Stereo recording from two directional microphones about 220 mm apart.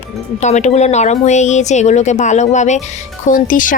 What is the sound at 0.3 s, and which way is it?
Speech, 30° left (ahead or behind).